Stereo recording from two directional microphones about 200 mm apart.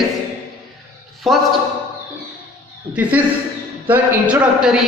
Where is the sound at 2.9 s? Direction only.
5° right (ahead or behind).